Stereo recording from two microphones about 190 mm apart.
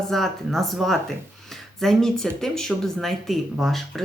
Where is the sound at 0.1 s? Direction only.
Centre (ahead or behind).